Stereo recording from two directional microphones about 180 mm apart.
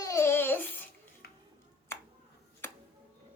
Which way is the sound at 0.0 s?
15° left (ahead or behind).